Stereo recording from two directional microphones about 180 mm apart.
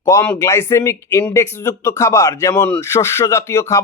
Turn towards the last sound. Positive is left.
turn(degrees=15)  # may be behind; listen again after turning